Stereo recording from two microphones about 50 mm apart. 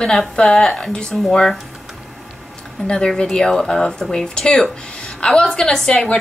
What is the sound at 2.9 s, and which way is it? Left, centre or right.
A woman's voice, centre.